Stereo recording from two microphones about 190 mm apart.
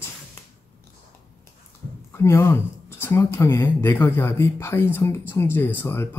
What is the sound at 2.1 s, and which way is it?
Speech, 15° left (ahead or behind).